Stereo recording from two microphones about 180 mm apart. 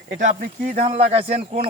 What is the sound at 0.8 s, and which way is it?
Speech, 35° right (ahead or behind).